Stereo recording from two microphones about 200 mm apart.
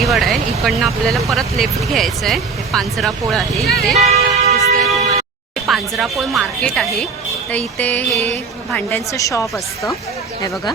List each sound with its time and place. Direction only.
0.0 s vehicle: centre (ahead or behind)
0.6 s speech: centre (ahead or behind)
3.9 s music: 35° right (ahead or behind)
4.6 s a sound: centre (ahead or behind)
5.6 s speech: centre (ahead or behind)
8.1 s a sound: 30° right (ahead or behind)
8.7 s speech: 10° left (ahead or behind)